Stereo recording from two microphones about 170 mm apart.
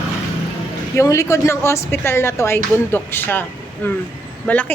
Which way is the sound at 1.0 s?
20° left (ahead or behind).